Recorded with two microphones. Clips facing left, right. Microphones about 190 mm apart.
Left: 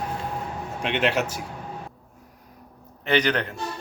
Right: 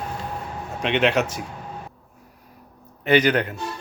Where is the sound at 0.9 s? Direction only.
60° right (ahead or behind).